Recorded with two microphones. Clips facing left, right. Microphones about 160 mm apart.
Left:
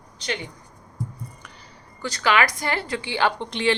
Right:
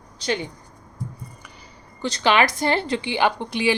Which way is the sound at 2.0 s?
20° right (ahead or behind).